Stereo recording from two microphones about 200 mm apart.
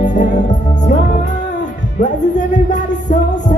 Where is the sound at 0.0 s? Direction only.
40° left (ahead or behind).